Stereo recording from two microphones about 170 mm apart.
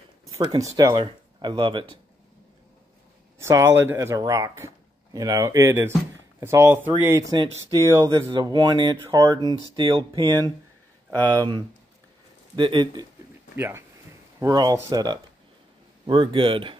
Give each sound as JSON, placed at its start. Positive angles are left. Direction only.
{"t": 0.4, "sound": "speech", "side_deg": -25}
{"t": 3.3, "sound": "a man's voice", "side_deg": -15}
{"t": 11.1, "sound": "speech", "side_deg": 10}
{"t": 11.3, "sound": "speech", "side_deg": -25}
{"t": 13.6, "sound": "speech", "side_deg": -15}
{"t": 14.4, "sound": "speech", "side_deg": -25}